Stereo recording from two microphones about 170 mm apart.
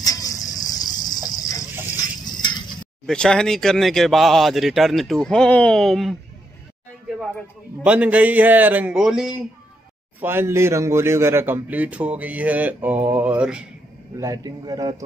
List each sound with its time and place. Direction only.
0.0 s a sound: 20° left (ahead or behind)
3.1 s speech: 5° left (ahead or behind)
7.8 s a man's voice: 5° right (ahead or behind)
10.2 s a man's voice: 15° right (ahead or behind)
14.2 s a man's voice: 20° right (ahead or behind)